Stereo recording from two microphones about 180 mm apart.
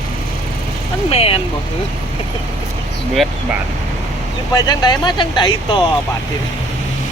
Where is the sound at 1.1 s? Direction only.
35° left (ahead or behind).